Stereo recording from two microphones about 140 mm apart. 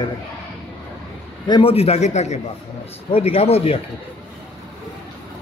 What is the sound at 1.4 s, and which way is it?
Speech, 30° left (ahead or behind).